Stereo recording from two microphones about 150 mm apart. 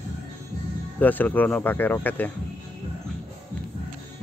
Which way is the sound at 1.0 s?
10° left (ahead or behind).